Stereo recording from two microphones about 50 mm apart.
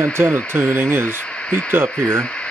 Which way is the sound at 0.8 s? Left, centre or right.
Right.